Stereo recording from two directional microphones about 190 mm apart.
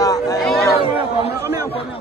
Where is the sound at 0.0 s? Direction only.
20° left (ahead or behind).